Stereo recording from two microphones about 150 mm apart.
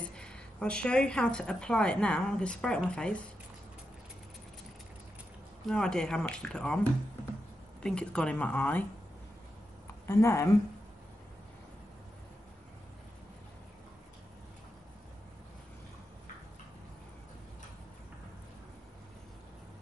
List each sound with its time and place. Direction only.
0.1 s a woman's voice: 5° left (ahead or behind)
5.7 s a woman's voice: 5° left (ahead or behind)
10.0 s a woman's voice: 20° left (ahead or behind)